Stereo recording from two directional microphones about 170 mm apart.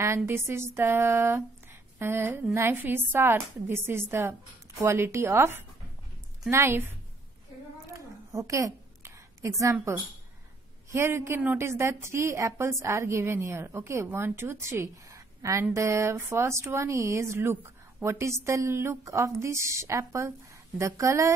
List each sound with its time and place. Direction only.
0.0 s a woman's voice: 15° right (ahead or behind)
7.9 s a sound: 20° right (ahead or behind)
10.9 s a woman's voice: 15° right (ahead or behind)